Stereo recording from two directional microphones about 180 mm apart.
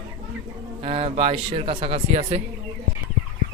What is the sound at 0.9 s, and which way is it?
Speech, 30° right (ahead or behind).